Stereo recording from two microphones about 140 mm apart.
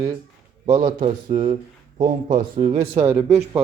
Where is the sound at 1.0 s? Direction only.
45° right (ahead or behind).